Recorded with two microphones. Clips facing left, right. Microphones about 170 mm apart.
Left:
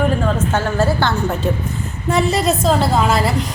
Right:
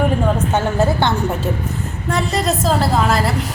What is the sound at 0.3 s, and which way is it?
Speech, 20° right (ahead or behind).